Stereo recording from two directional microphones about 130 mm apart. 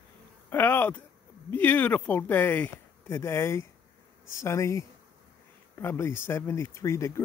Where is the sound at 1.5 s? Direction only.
15° left (ahead or behind).